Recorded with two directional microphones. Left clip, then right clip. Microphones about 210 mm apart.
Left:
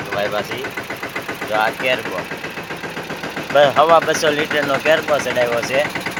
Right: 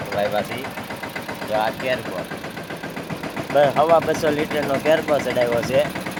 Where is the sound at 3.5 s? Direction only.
10° right (ahead or behind); by 5.7 s 25° right (ahead or behind).